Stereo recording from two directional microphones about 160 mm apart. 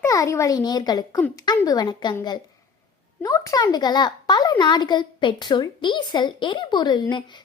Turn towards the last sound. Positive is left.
turn(degrees=25)  # may be behind; listen again after turning